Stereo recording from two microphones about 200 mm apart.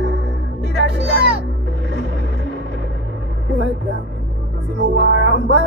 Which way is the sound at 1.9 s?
65° right (ahead or behind).